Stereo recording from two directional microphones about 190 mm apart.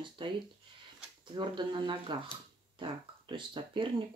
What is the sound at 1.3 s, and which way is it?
Speech, 25° right (ahead or behind).